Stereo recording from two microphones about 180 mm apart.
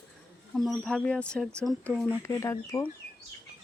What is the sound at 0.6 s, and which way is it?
Speech, centre (ahead or behind).